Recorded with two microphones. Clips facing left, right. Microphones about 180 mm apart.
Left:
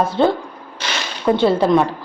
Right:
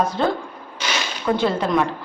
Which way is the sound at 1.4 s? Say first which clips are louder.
Left 7 dB; 30° left (ahead or behind).